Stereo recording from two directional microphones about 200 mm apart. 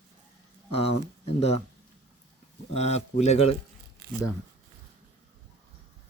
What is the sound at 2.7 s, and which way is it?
Speech, 30° left (ahead or behind).